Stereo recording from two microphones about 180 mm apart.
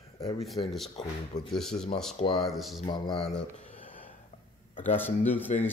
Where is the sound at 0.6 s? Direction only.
25° left (ahead or behind).